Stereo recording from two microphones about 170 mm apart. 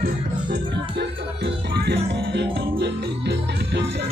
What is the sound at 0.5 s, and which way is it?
Music, 80° right.